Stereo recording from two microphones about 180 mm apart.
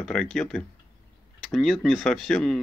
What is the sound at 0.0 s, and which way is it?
Speech, 5° left (ahead or behind).